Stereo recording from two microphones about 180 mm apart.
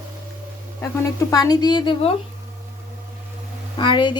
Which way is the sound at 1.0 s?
20° left (ahead or behind).